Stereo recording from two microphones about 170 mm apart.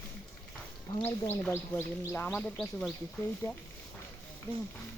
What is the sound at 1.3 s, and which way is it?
Speech, 10° left (ahead or behind).